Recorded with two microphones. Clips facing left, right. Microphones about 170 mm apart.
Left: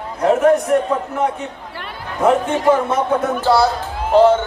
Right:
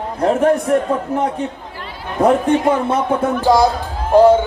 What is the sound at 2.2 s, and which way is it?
Speech, 35° right (ahead or behind).